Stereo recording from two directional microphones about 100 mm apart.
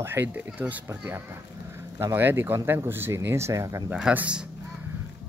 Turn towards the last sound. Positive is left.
turn(degrees=-10)  # may be behind; listen again after turning